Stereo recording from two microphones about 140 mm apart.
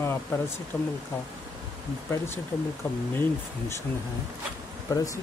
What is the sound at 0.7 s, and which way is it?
Speech, 5° left (ahead or behind).